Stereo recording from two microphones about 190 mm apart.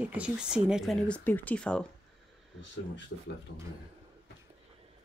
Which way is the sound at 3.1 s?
70° left (ahead or behind).